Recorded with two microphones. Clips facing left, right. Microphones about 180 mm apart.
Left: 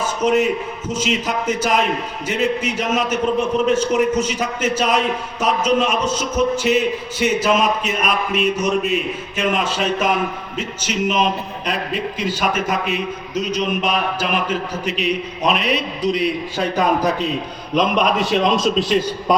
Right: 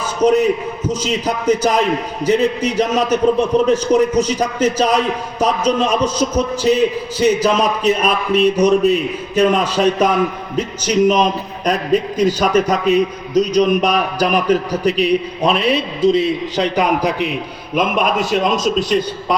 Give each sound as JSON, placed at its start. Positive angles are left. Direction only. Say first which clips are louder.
{"t": 0.2, "sound": "a man's voice", "louder": "right 5 dB", "side_deg": -35}
{"t": 17.7, "sound": "a man's voice", "louder": "right 1 dB", "side_deg": -5}